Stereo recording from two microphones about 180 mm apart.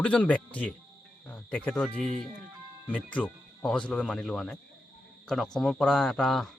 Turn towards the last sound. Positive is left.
turn(degrees=0)  # may be behind; listen again after turning